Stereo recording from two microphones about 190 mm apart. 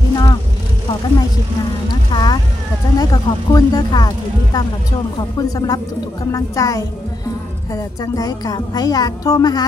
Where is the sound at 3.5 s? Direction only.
20° left (ahead or behind).